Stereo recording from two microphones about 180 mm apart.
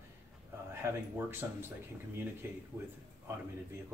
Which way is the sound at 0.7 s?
15° right (ahead or behind).